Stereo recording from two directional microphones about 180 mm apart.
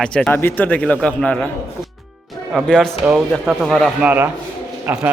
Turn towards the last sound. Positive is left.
turn(degrees=-10)  # may be behind; listen again after turning